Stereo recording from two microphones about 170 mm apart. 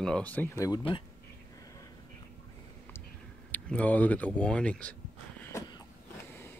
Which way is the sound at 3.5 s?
10° left (ahead or behind).